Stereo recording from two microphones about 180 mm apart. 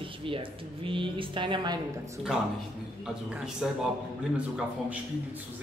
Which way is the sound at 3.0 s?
5° right (ahead or behind).